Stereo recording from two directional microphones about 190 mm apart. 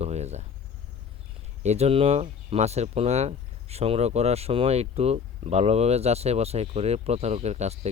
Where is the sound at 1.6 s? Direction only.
35° right (ahead or behind).